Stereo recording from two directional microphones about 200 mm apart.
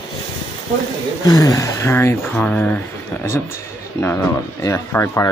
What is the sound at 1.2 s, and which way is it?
Speech, 20° left (ahead or behind).